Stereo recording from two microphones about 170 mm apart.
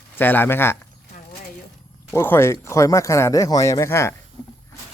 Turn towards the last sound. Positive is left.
turn(degrees=15)  # may be behind; listen again after turning